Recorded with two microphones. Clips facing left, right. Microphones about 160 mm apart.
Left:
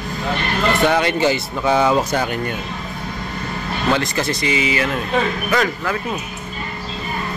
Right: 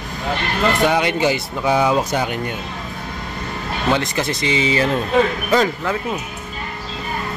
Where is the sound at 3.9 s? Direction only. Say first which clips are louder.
Even; 20° right (ahead or behind).